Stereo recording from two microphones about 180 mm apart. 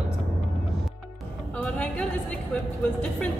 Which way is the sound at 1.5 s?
5° left (ahead or behind).